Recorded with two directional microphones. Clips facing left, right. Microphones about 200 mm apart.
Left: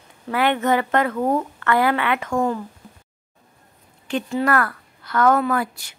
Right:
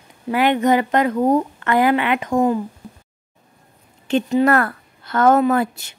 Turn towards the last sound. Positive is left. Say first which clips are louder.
# right 5 dB
turn(degrees=-25)  # may be behind; listen again after turning